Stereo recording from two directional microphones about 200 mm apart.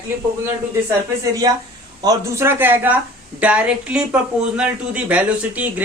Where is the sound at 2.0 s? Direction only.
15° right (ahead or behind).